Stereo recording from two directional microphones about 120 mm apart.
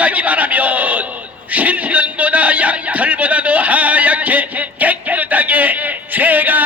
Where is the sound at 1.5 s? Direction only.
10° right (ahead or behind).